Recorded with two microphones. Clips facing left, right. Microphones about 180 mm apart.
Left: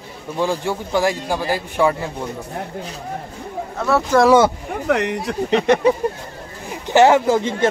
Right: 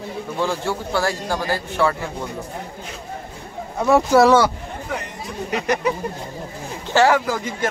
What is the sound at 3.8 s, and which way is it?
Speech, 15° right (ahead or behind).